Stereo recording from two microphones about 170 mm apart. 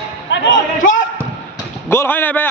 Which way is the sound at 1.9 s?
15° left (ahead or behind).